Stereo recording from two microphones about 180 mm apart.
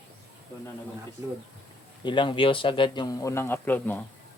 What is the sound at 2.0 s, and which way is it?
Speech, 25° left (ahead or behind).